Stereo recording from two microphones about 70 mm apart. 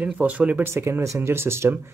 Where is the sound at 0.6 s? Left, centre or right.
Right.